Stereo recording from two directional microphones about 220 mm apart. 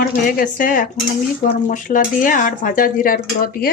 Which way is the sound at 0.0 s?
40° left (ahead or behind).